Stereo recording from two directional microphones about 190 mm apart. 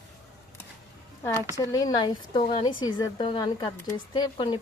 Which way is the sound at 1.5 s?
20° left (ahead or behind).